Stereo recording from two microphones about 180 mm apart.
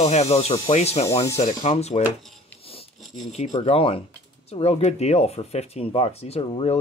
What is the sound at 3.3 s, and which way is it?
Speech, 35° left (ahead or behind).